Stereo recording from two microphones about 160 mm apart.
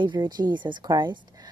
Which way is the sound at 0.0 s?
30° right (ahead or behind).